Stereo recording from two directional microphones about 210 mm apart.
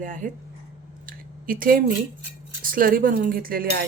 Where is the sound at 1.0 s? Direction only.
40° right (ahead or behind).